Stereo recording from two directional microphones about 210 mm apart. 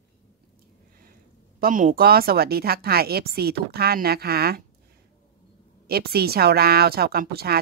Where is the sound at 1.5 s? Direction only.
40° right (ahead or behind).